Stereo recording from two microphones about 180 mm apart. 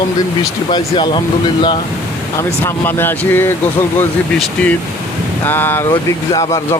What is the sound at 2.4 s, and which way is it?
Speech, 15° left (ahead or behind).